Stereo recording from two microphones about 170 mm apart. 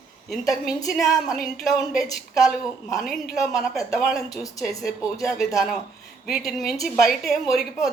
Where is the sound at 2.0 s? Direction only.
20° left (ahead or behind).